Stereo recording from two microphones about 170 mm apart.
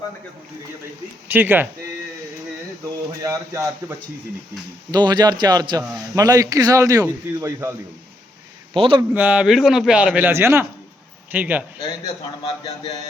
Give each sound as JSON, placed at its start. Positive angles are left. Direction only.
{"t": 1.3, "sound": "a man's voice", "side_deg": -10}
{"t": 3.2, "sound": "a man's voice", "side_deg": -20}
{"t": 8.7, "sound": "a man's voice", "side_deg": -30}
{"t": 9.1, "sound": "a man's voice", "side_deg": -5}